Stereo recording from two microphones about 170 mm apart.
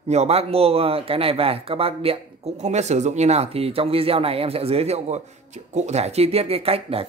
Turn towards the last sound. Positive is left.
turn(degrees=-35)  # may be behind; listen again after turning